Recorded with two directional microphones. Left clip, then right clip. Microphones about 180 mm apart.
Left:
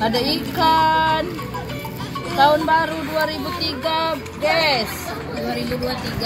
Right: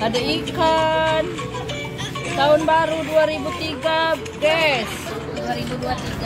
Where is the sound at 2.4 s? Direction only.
25° left (ahead or behind).